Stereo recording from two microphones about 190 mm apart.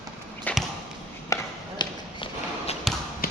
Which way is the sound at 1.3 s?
25° left (ahead or behind).